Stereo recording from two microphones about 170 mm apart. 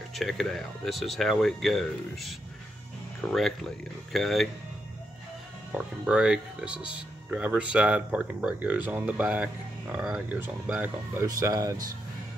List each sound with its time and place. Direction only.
0.1 s speech: centre (ahead or behind)
5.7 s speech: 5° right (ahead or behind)
11.2 s speech: 20° right (ahead or behind)